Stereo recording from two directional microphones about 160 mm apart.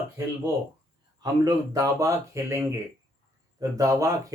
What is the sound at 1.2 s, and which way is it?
Speech, 25° right (ahead or behind).